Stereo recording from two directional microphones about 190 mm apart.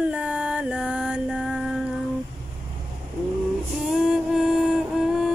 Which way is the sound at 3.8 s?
5° right (ahead or behind).